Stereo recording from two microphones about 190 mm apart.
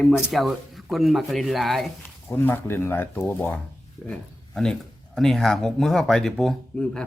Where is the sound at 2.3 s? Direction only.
10° left (ahead or behind).